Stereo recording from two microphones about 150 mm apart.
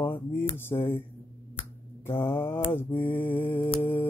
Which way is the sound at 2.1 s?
15° left (ahead or behind).